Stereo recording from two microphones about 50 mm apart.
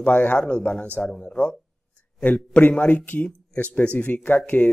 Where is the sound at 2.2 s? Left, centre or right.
Left.